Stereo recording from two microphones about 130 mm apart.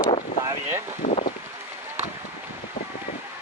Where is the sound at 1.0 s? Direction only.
55° left (ahead or behind).